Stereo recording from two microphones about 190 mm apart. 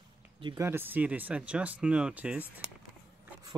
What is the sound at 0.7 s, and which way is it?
Speech, 10° right (ahead or behind).